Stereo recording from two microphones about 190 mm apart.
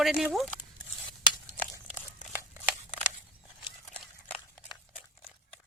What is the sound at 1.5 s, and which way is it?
Crumpling, 10° left (ahead or behind).